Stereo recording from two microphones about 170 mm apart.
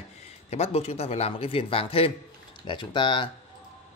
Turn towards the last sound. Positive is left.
turn(degrees=30)  # may be behind; listen again after turning